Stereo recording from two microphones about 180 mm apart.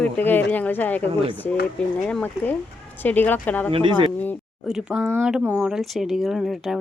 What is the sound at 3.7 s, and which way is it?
Speech, 30° right (ahead or behind).